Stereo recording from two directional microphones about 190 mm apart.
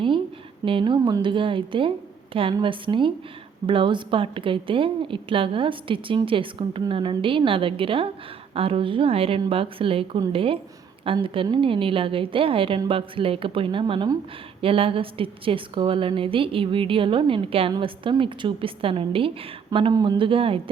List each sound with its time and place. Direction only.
0.6 s a woman's voice: 25° right (ahead or behind)